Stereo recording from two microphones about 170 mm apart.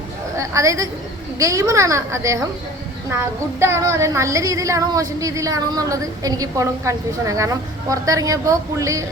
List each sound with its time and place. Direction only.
0.3 s a woman's voice: 20° right (ahead or behind)
1.4 s child singing: 20° right (ahead or behind)